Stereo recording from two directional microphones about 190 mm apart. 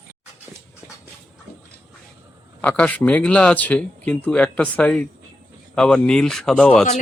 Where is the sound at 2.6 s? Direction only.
5° left (ahead or behind).